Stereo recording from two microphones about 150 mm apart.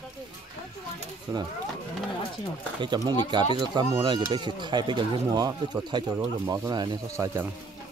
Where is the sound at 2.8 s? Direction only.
30° right (ahead or behind).